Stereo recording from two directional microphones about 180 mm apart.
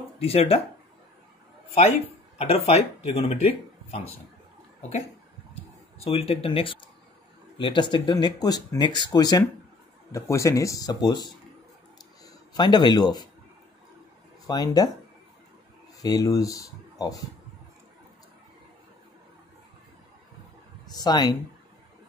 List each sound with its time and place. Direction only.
0.2 s speech: 35° left (ahead or behind)
2.3 s speech: 30° left (ahead or behind)
5.5 s a sound: 35° left (ahead or behind)
7.5 s speech: 25° left (ahead or behind)
12.5 s speech: 25° left (ahead or behind)
14.5 s speech: 20° left (ahead or behind)
16.0 s speech: 20° left (ahead or behind)
20.9 s speech: 20° left (ahead or behind)